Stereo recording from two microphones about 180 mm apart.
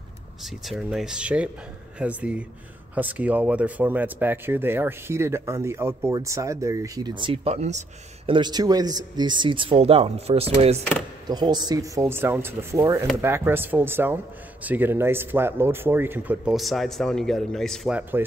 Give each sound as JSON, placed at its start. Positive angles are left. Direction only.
{"t": 0.4, "sound": "speech", "side_deg": 0}
{"t": 8.3, "sound": "speech", "side_deg": -25}
{"t": 11.2, "sound": "speech", "side_deg": -25}
{"t": 18.2, "sound": "speech", "side_deg": -10}